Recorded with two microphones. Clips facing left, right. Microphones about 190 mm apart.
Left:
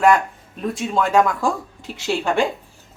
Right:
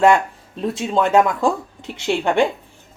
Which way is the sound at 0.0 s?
25° right (ahead or behind).